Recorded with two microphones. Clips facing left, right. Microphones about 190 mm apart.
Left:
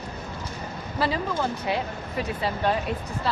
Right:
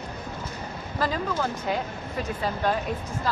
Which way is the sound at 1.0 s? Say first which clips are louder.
Left 1 dB; 10° left (ahead or behind).